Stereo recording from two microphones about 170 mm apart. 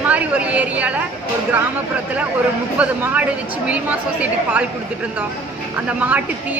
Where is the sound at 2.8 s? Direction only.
10° right (ahead or behind).